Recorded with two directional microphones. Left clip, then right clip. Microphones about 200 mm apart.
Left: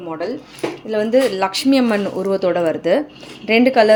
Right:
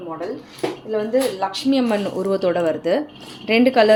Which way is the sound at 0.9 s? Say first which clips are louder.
Left 5 dB; 40° left (ahead or behind).